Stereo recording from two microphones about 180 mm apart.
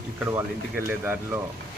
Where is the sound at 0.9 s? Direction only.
10° right (ahead or behind).